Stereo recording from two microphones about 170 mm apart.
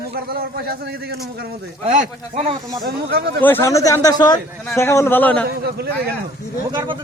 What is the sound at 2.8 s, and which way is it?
Speech, 65° right (ahead or behind).